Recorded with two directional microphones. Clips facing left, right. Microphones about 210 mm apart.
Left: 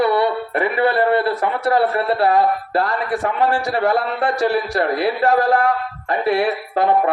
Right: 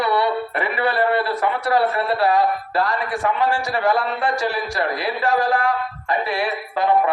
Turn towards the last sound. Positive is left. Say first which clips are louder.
# left 2 dB
turn(degrees=60)  # may be behind; listen again after turning